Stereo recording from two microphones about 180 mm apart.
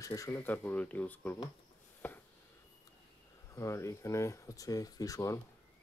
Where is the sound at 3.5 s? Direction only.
15° left (ahead or behind).